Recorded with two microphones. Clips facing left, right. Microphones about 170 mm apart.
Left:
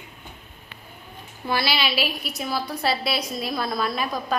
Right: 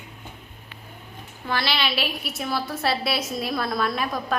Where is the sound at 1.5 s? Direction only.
10° left (ahead or behind).